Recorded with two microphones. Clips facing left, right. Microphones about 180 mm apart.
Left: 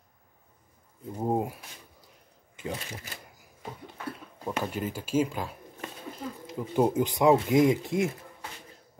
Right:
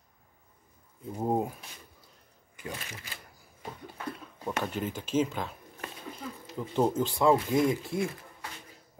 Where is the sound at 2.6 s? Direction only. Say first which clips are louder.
Left 5 dB; 25° left (ahead or behind).